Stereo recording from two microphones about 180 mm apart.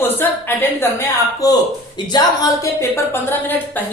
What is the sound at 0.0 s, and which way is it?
A woman's voice, 10° left (ahead or behind).